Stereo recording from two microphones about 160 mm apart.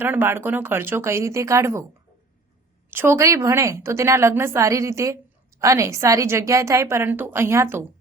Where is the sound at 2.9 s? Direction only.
15° right (ahead or behind).